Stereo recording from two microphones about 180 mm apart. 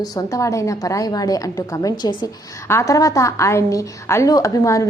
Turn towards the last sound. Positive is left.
turn(degrees=20)  # may be behind; listen again after turning